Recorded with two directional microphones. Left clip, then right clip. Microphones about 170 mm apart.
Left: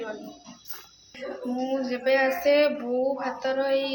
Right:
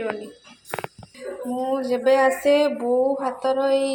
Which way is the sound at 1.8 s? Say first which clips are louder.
Right 6 dB; 35° right (ahead or behind).